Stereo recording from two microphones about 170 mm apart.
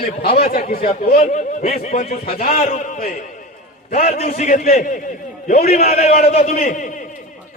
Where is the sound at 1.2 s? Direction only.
40° left (ahead or behind).